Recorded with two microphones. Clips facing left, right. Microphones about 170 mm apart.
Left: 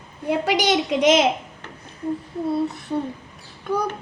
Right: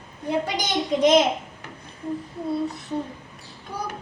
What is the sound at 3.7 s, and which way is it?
Speech, 60° left (ahead or behind).